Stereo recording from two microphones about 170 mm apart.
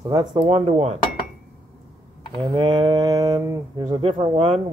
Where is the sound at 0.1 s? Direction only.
25° right (ahead or behind).